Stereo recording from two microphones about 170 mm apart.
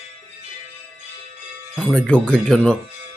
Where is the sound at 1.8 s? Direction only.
5° left (ahead or behind).